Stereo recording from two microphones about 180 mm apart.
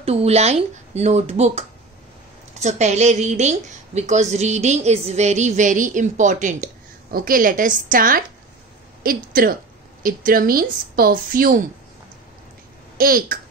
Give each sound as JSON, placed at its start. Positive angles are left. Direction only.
{"t": 0.0, "sound": "a woman's voice", "side_deg": -35}
{"t": 12.9, "sound": "speech", "side_deg": -55}